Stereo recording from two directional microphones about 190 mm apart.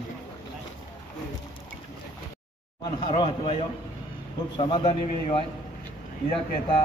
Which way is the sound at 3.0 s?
25° left (ahead or behind).